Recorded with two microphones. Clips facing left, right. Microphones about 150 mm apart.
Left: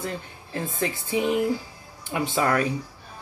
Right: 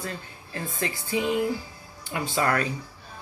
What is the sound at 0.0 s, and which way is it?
Speech, 15° left (ahead or behind).